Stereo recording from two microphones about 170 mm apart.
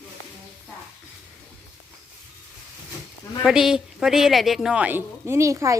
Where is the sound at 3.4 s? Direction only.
5° right (ahead or behind).